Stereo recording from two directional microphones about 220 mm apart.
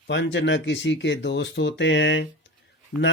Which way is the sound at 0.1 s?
55° left (ahead or behind).